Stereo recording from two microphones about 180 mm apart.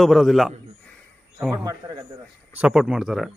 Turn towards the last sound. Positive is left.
turn(degrees=0)  # may be behind; listen again after turning